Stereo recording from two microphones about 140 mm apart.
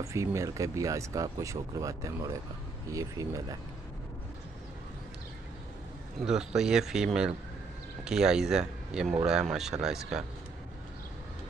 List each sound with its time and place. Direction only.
0.0 s speech: 20° right (ahead or behind)
6.2 s speech: 5° right (ahead or behind)